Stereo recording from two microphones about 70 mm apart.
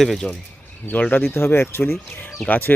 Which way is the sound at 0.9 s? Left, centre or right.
Left.